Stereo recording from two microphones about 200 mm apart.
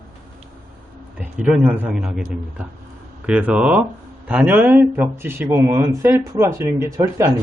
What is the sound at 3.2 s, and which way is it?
Speech, 5° right (ahead or behind).